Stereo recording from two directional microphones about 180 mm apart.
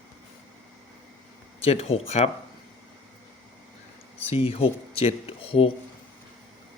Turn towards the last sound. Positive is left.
turn(degrees=30)  # may be behind; listen again after turning